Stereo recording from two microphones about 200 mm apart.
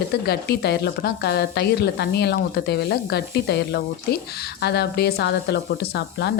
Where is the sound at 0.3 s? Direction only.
55° left (ahead or behind).